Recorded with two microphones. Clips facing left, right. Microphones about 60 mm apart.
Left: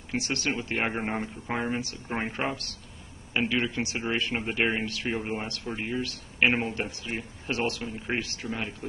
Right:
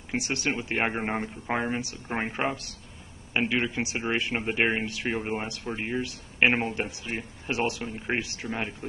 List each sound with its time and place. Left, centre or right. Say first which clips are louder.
0.1 s speech: right 1 dB; centre
5.9 s speech: right 1 dB; right